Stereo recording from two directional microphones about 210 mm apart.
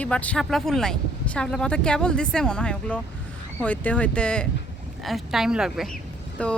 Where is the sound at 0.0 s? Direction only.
5° left (ahead or behind).